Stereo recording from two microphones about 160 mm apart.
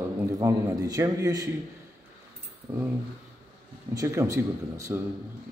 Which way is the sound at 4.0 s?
20° right (ahead or behind).